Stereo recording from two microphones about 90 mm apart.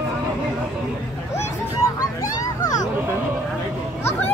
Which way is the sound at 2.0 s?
40° left (ahead or behind).